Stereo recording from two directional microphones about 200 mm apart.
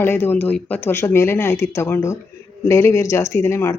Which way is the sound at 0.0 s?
10° left (ahead or behind).